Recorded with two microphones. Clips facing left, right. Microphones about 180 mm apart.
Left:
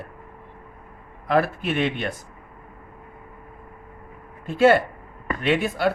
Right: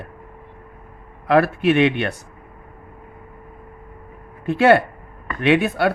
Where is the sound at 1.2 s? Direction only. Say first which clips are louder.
Right 6 dB; 70° right (ahead or behind).